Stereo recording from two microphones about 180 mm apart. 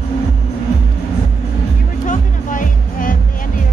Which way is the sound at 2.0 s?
45° left (ahead or behind).